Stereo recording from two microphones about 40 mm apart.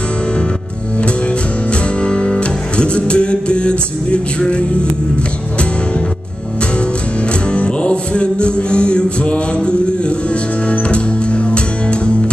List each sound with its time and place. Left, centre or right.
1.7 s music: left
7.5 s music: left